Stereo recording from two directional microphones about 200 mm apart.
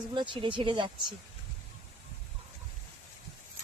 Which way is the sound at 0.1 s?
25° right (ahead or behind).